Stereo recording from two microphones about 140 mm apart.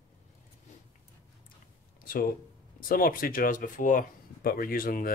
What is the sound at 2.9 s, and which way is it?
Speech, 90° left.